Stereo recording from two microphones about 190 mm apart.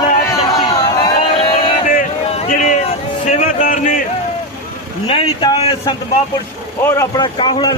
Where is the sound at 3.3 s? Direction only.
40° left (ahead or behind).